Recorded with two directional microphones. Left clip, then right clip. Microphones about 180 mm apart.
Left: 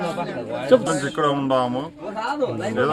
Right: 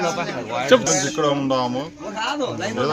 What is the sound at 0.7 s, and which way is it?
Speech, centre (ahead or behind).